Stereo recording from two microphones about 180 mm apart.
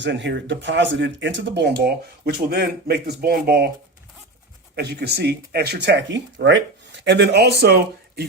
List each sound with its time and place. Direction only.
0.0 s speech: 75° right (ahead or behind); by 3.7 s 60° right (ahead or behind)
4.7 s speech: 65° right (ahead or behind)